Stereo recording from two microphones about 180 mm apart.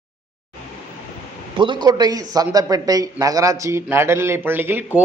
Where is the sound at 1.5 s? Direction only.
25° right (ahead or behind).